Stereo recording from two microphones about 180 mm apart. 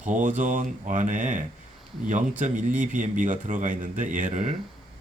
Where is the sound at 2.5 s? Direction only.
10° right (ahead or behind).